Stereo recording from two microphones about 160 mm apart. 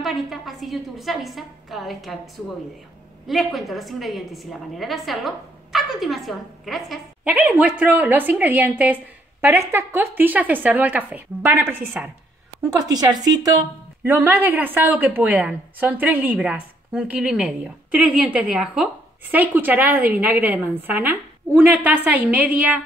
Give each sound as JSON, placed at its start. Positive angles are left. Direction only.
{"t": 0.0, "sound": "a woman's voice", "side_deg": 0}
{"t": 3.3, "sound": "a woman's voice", "side_deg": 0}
{"t": 7.3, "sound": "a woman's voice", "side_deg": -10}
{"t": 14.0, "sound": "a woman's voice", "side_deg": -10}